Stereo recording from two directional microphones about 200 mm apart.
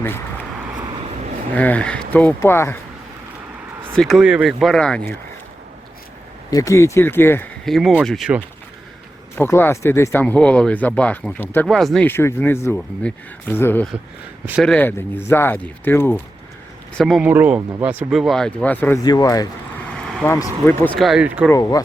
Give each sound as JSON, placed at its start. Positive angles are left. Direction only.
{"t": 0.0, "sound": "a sound", "side_deg": 10}
{"t": 1.5, "sound": "speech", "side_deg": 5}
{"t": 3.9, "sound": "speech", "side_deg": 0}
{"t": 6.5, "sound": "speech", "side_deg": 15}
{"t": 9.4, "sound": "speech", "side_deg": 10}
{"t": 21.0, "sound": "speech", "side_deg": -5}
{"t": 21.5, "sound": "speech", "side_deg": 20}